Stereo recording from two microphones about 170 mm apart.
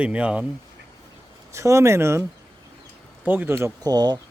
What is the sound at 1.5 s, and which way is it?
Speech, 15° right (ahead or behind).